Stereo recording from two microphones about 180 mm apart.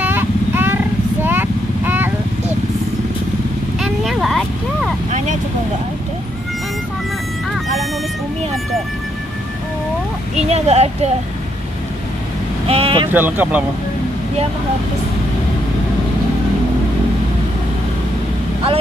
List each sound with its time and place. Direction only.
0.0 s vehicle: 10° right (ahead or behind)
3.8 s vehicle: centre (ahead or behind)
10.3 s speech: 35° right (ahead or behind)
12.6 s speech: 35° right (ahead or behind)
13.1 s speech: 10° right (ahead or behind)